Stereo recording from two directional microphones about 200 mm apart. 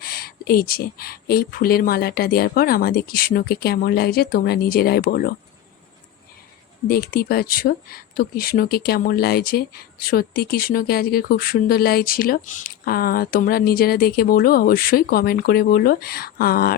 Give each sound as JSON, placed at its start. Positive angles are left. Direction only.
{"t": 0.0, "sound": "speech", "side_deg": 50}
{"t": 6.8, "sound": "speech", "side_deg": 50}